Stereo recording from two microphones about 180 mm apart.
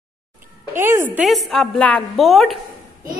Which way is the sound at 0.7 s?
15° right (ahead or behind).